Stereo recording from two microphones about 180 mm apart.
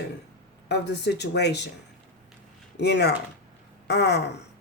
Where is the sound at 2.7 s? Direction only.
70° left (ahead or behind).